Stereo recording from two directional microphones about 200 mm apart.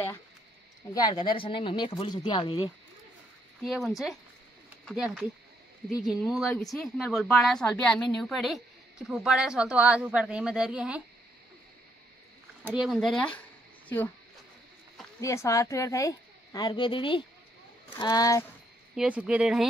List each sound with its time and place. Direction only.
0.9 s speech: 20° left (ahead or behind)
3.6 s speech: centre (ahead or behind)
12.6 s speech: 5° right (ahead or behind)
15.1 s a woman's voice: 15° left (ahead or behind)
18.9 s speech: 5° right (ahead or behind)